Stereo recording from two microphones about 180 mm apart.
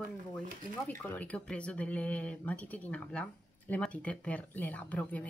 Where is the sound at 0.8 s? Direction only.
10° left (ahead or behind).